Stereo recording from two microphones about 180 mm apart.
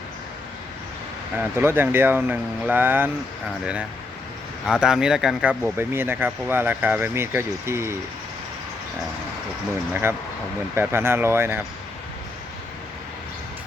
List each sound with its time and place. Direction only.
1.4 s speech: 10° right (ahead or behind)
4.6 s speech: 5° right (ahead or behind)
9.9 s speech: 10° right (ahead or behind)